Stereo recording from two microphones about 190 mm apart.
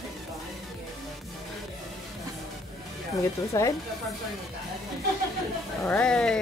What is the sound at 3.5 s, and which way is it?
Speech, 15° left (ahead or behind).